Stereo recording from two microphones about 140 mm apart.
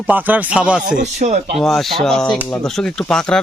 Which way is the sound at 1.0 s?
55° right (ahead or behind).